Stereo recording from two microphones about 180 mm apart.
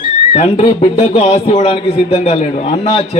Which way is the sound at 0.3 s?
35° left (ahead or behind).